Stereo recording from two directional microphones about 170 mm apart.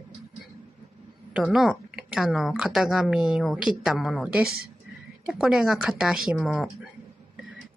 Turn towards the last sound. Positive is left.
turn(degrees=0)  # may be behind; listen again after turning